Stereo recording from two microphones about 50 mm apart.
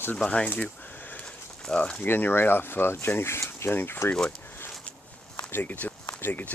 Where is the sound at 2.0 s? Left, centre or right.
Left.